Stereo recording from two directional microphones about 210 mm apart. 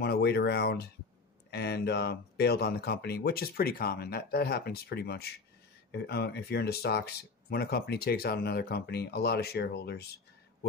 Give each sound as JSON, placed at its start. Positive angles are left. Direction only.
{"t": 0.0, "sound": "speech", "side_deg": 50}